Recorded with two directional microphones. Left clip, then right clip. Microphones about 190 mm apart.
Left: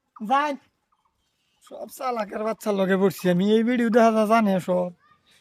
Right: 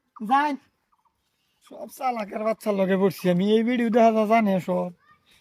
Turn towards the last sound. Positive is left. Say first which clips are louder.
# left 2 dB
turn(degrees=10)  # may be behind; listen again after turning